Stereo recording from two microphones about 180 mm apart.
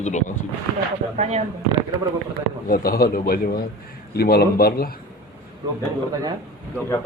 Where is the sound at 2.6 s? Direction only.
55° left (ahead or behind).